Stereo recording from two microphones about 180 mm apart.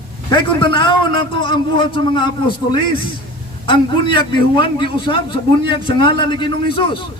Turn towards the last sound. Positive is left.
turn(degrees=30)  # may be behind; listen again after turning